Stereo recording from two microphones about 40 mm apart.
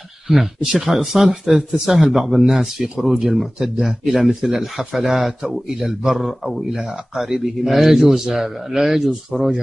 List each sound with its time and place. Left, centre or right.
0.3 s speech: centre
3.5 s speech: centre
3.8 s speech: centre